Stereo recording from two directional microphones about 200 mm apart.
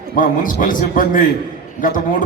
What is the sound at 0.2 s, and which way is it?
A man's voice, 40° left (ahead or behind).